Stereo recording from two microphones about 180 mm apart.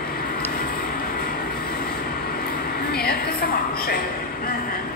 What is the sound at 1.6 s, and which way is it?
Train, 55° left (ahead or behind).